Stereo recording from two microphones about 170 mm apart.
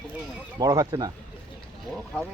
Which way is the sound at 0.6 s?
25° right (ahead or behind).